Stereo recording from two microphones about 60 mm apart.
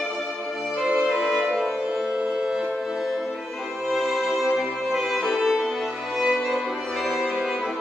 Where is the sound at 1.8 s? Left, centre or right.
Centre.